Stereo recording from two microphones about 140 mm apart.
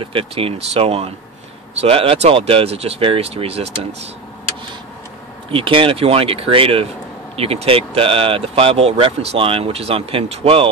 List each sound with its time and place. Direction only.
0.0 s speech: 40° right (ahead or behind)
5.5 s speech: 40° right (ahead or behind)